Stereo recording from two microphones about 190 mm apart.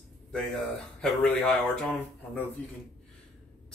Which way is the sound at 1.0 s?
5° left (ahead or behind).